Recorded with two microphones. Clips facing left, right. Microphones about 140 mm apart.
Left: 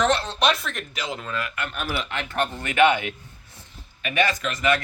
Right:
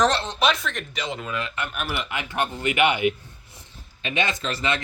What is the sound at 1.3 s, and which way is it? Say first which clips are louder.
Speech: even; 20° right (ahead or behind).